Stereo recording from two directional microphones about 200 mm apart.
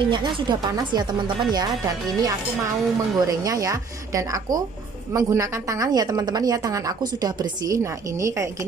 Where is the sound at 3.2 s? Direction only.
15° right (ahead or behind).